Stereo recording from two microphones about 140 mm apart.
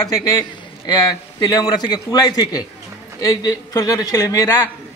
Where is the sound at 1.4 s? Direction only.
25° left (ahead or behind).